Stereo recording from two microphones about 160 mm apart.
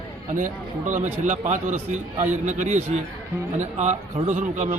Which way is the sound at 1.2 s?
50° right (ahead or behind).